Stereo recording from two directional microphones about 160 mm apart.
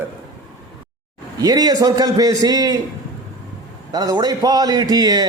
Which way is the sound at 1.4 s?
25° right (ahead or behind).